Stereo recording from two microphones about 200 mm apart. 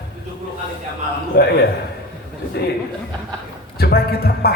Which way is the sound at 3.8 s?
50° left (ahead or behind).